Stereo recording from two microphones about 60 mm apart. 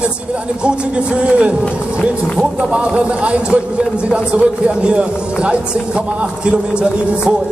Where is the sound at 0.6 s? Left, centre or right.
Centre.